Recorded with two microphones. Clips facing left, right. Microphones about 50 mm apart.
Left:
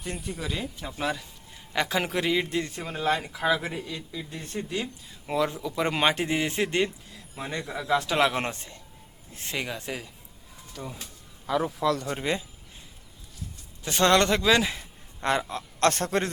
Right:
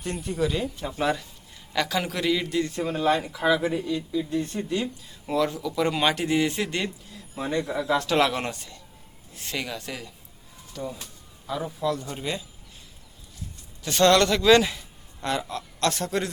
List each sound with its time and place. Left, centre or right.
0.0 s speech: centre
1.7 s speech: left
2.8 s speech: centre; by 6.9 s left
7.3 s speech: centre
8.2 s speech: left
10.8 s speech: centre
11.4 s a man's voice: left
12.0 s a man's voice: left
13.8 s speech: left
14.4 s speech: centre
14.7 s speech: left
15.8 s a man's voice: left